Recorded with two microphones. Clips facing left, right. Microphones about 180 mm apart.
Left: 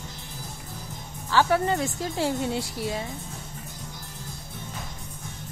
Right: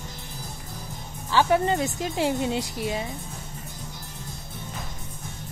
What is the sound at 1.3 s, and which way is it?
A woman's voice, 20° right (ahead or behind).